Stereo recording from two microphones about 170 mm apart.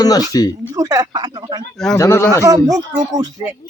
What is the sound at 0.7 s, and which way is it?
Speech, 20° right (ahead or behind).